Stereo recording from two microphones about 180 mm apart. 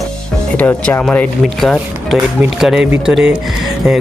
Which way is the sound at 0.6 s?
10° left (ahead or behind).